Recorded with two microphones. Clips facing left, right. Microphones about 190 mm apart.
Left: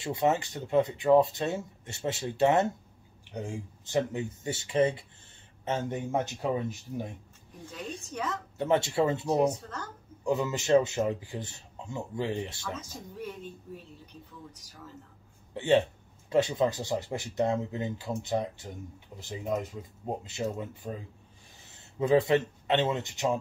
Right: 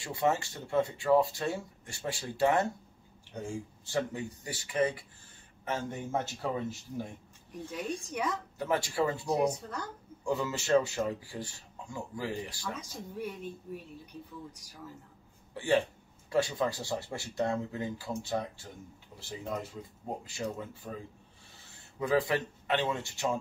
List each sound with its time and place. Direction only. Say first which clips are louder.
0.0 s speech: left 3 dB; 20° left (ahead or behind)
8.1 s speech: left 1 dB; 10° right (ahead or behind)
8.5 s speech: left 5 dB; 25° left (ahead or behind)
9.4 s speech: left 3 dB; 10° right (ahead or behind)
10.2 s speech: left 3 dB; 20° left (ahead or behind)
12.8 s speech: right 1 dB; 10° right (ahead or behind)
14.5 s speech: even; 10° right (ahead or behind)
15.5 s speech: left 4 dB; 25° left (ahead or behind)
22.0 s speech: left 5 dB; 25° left (ahead or behind)